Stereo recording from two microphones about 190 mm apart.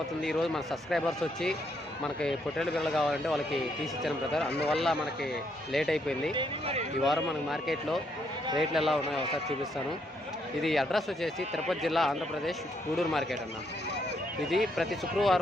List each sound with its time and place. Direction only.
0.2 s speech: centre (ahead or behind)
6.3 s speech: 30° right (ahead or behind)
7.0 s speech: centre (ahead or behind)
10.6 s speech: centre (ahead or behind)
14.5 s speech: centre (ahead or behind)